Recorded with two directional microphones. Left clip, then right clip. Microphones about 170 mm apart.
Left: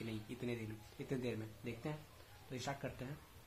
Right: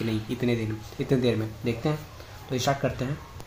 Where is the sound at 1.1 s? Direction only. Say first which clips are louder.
Right 18 dB; centre (ahead or behind).